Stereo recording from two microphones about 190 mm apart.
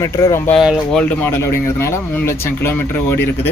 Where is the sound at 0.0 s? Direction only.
15° left (ahead or behind).